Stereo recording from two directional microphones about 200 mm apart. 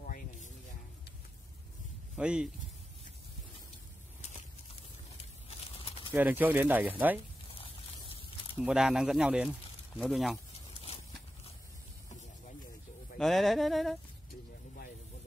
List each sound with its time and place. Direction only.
0.0 s a sound: 45° left (ahead or behind)
2.1 s speech: 5° right (ahead or behind)
6.1 s speech: 10° right (ahead or behind)
8.5 s speech: 5° right (ahead or behind)
13.2 s speech: centre (ahead or behind)